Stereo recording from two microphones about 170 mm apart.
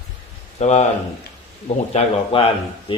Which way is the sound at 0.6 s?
40° left (ahead or behind).